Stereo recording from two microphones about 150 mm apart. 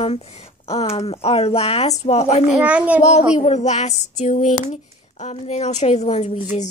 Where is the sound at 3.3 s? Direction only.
50° left (ahead or behind).